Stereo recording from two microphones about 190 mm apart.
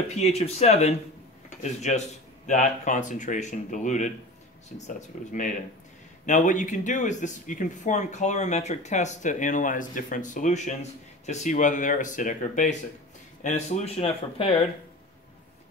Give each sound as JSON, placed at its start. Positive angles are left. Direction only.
{"t": 0.1, "sound": "speech", "side_deg": 35}